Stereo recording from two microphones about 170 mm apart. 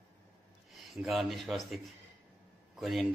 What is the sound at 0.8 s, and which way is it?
Speech, centre (ahead or behind).